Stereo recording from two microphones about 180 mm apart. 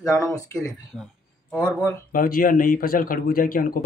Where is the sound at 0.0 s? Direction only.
20° left (ahead or behind).